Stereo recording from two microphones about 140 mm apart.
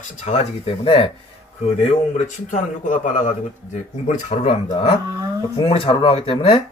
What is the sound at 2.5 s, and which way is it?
Speech, 65° left (ahead or behind).